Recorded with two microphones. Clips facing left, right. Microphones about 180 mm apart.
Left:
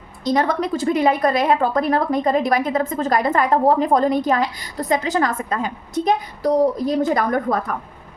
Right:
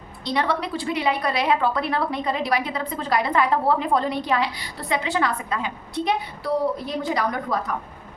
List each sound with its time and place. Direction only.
0.3 s a woman's voice: 45° left (ahead or behind)